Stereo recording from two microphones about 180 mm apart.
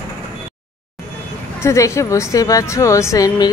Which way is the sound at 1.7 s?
15° left (ahead or behind).